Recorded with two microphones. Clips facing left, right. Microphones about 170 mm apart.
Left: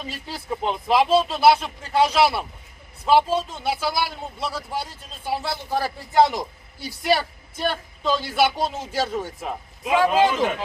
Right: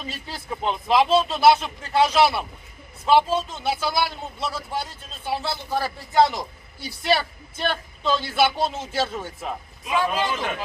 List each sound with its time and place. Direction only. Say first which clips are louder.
0.1 s a man's voice: left 3 dB; 5° left (ahead or behind)
9.8 s speech: left 5 dB; 85° left